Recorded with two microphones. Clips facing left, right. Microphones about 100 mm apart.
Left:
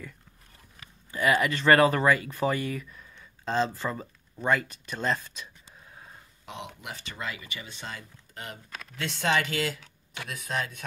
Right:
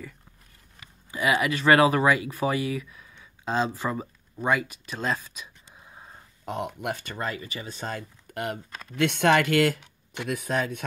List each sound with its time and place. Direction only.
1.1 s speech: 10° right (ahead or behind)
6.4 s speech: 50° right (ahead or behind)
8.9 s speech: 65° right (ahead or behind)